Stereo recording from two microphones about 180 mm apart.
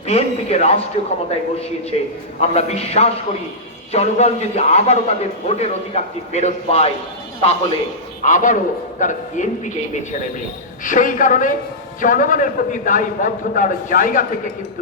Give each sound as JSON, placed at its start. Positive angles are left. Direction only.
{"t": 0.1, "sound": "a man's voice", "side_deg": 35}
{"t": 8.2, "sound": "a man's voice", "side_deg": 45}